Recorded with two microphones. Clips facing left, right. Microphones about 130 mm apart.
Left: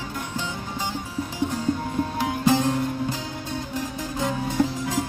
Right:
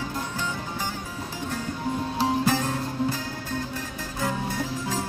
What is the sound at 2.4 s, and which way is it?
Music, 20° left (ahead or behind).